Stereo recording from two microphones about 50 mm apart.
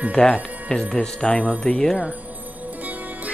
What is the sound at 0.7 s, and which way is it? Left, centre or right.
Speech, centre.